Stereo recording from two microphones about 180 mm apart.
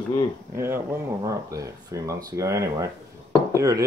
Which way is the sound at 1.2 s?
20° right (ahead or behind).